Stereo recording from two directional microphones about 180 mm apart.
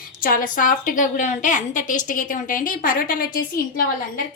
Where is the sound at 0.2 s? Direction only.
50° left (ahead or behind).